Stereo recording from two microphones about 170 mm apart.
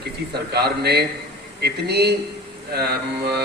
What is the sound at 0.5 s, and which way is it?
A man's voice, 75° right (ahead or behind).